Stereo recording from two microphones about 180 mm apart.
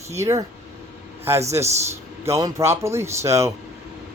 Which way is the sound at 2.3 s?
15° right (ahead or behind).